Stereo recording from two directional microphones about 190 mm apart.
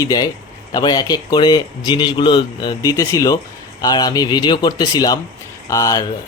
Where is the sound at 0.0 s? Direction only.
20° left (ahead or behind).